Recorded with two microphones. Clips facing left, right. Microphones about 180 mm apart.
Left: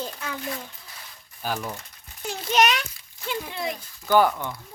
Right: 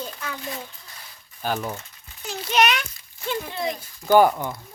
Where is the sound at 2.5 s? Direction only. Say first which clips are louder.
Even; 40° left (ahead or behind).